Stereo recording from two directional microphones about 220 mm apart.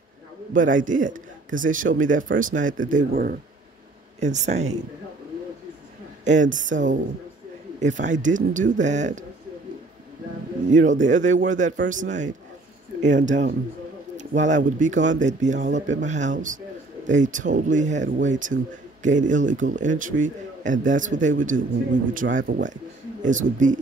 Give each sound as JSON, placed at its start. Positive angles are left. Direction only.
{"t": 0.7, "sound": "speech", "side_deg": -35}
{"t": 4.2, "sound": "speech", "side_deg": -30}
{"t": 6.2, "sound": "speech", "side_deg": -35}
{"t": 10.7, "sound": "speech", "side_deg": -35}